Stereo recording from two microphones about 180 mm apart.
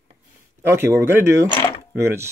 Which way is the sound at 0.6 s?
15° right (ahead or behind).